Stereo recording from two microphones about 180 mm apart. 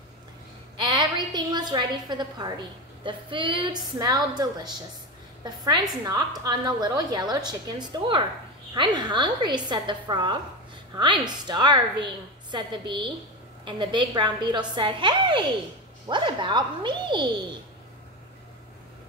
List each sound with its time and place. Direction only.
0.8 s a woman's voice: 25° right (ahead or behind)
6.0 s a woman's voice: 20° right (ahead or behind)